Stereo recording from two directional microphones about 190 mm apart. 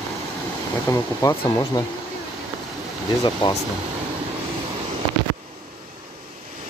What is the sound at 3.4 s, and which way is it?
Speech, 25° left (ahead or behind).